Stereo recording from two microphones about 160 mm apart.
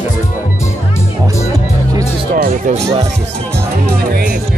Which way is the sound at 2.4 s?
60° right (ahead or behind).